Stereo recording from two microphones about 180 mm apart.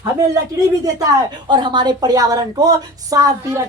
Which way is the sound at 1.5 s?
25° right (ahead or behind).